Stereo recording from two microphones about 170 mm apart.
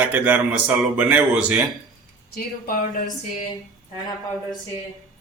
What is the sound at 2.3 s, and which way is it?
Speech, 55° left (ahead or behind).